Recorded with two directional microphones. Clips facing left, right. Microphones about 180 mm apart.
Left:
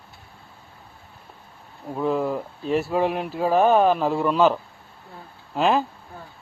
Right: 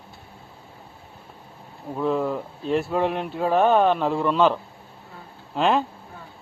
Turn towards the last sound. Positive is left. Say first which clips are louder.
# even
turn(degrees=0)  # may be behind; listen again after turning